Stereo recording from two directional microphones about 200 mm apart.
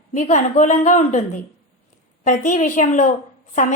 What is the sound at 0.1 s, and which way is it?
A woman's voice, 35° left (ahead or behind).